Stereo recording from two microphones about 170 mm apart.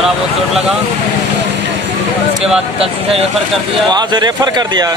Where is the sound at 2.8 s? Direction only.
35° right (ahead or behind).